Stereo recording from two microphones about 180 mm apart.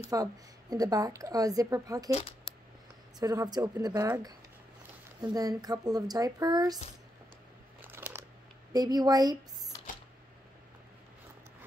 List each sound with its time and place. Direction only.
0.1 s a woman's voice: 20° right (ahead or behind)
2.1 s speech: 35° left (ahead or behind)
3.2 s a woman's voice: 20° right (ahead or behind)
5.2 s a woman's voice: 20° right (ahead or behind)
7.8 s scissors: 10° right (ahead or behind)
8.7 s a woman's voice: 20° right (ahead or behind)